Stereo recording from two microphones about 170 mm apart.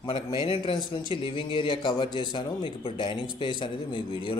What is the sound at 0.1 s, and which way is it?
A man's voice, 30° left (ahead or behind).